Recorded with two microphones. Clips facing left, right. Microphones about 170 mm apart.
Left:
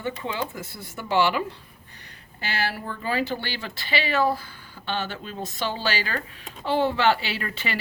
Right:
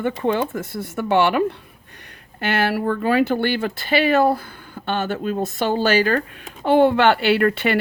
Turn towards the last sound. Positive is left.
turn(degrees=-60)  # may be behind; listen again after turning